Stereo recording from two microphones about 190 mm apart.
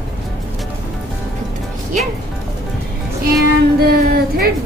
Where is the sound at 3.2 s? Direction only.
55° right (ahead or behind).